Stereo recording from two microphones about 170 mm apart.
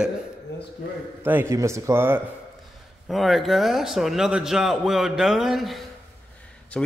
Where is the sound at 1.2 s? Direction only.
15° right (ahead or behind).